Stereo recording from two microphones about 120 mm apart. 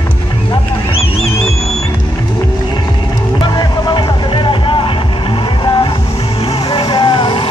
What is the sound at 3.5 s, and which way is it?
Music, 40° left (ahead or behind).